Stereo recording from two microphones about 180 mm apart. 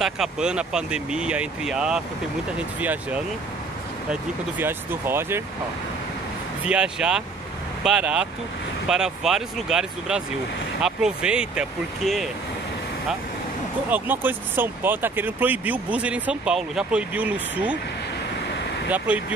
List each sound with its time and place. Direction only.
0.0 s speech: 5° right (ahead or behind)
6.6 s speech: 5° right (ahead or behind)
13.8 s speech: 10° right (ahead or behind)
18.9 s speech: 10° right (ahead or behind)